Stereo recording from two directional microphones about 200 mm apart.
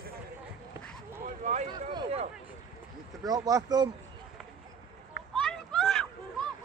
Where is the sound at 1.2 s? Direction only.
40° right (ahead or behind).